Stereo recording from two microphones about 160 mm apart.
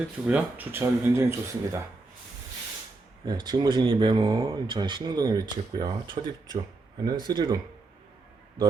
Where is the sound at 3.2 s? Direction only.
25° right (ahead or behind).